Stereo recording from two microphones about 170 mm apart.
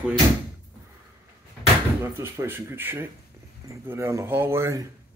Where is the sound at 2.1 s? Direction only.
15° right (ahead or behind).